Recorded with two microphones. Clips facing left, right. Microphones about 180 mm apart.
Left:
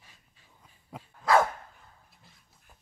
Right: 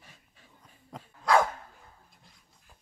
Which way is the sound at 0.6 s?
5° left (ahead or behind).